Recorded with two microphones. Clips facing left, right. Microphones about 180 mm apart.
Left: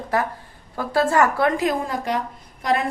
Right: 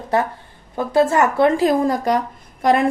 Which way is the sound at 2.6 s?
50° right (ahead or behind).